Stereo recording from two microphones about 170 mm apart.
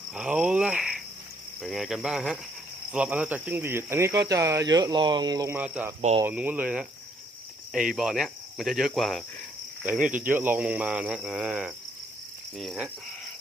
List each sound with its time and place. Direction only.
0.1 s cricket: 5° right (ahead or behind); by 5.5 s 20° right (ahead or behind)
5.5 s cricket: 10° right (ahead or behind)